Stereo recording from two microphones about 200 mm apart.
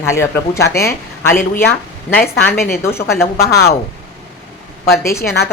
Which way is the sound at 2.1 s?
10° left (ahead or behind).